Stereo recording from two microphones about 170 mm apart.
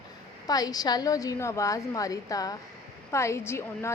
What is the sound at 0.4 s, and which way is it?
A woman's voice, 20° left (ahead or behind).